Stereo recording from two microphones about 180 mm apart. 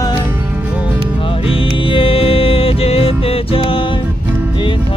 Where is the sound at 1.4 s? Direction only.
30° left (ahead or behind).